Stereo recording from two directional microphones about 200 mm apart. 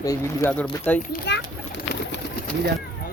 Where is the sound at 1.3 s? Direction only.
60° left (ahead or behind).